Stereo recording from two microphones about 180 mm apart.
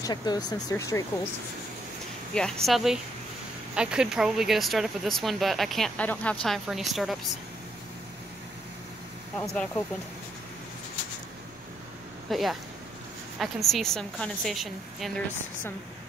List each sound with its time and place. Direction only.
0.0 s speech: 25° left (ahead or behind)
2.3 s speech: 5° left (ahead or behind)
9.4 s speech: 5° left (ahead or behind)
12.3 s speech: centre (ahead or behind)